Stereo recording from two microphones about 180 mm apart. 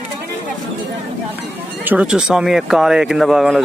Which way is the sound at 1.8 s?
10° right (ahead or behind).